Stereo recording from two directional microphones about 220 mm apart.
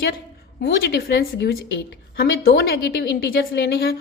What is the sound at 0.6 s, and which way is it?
A woman's voice, 45° left (ahead or behind).